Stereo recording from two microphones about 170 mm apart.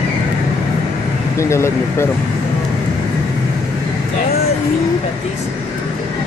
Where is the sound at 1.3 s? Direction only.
15° left (ahead or behind).